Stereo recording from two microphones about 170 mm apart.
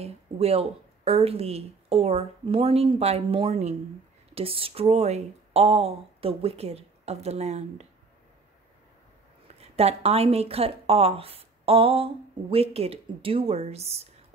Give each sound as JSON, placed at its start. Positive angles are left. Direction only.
{"t": 0.0, "sound": "a woman's voice", "side_deg": -35}
{"t": 9.6, "sound": "a woman's voice", "side_deg": -35}